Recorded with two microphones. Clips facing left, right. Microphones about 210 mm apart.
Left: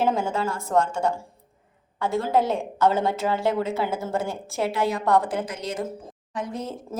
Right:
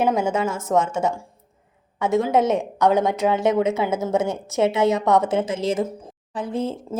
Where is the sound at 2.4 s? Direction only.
20° right (ahead or behind).